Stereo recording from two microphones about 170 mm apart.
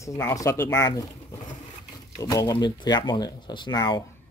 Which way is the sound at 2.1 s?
20° left (ahead or behind).